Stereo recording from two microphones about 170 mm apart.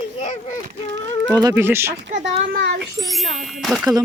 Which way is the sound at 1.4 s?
15° right (ahead or behind).